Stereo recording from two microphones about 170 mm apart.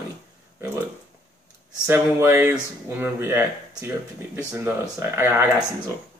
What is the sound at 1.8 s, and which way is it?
Speech, 15° right (ahead or behind).